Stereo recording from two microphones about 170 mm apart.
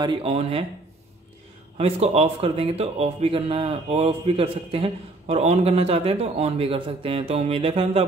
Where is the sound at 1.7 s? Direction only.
35° right (ahead or behind).